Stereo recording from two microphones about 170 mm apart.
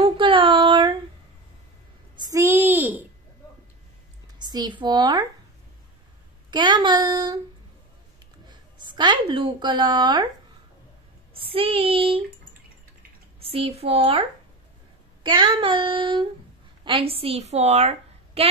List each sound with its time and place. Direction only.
0.0 s a sound: 30° right (ahead or behind)
2.3 s a sound: 15° right (ahead or behind)
4.4 s speech: 25° right (ahead or behind)
6.5 s child singing: 25° right (ahead or behind)
8.5 s a woman's voice: 25° right (ahead or behind)
11.3 s child singing: 35° right (ahead or behind)
13.4 s child singing: 35° right (ahead or behind)
15.2 s child singing: 30° right (ahead or behind)
16.8 s a woman's voice: 30° right (ahead or behind)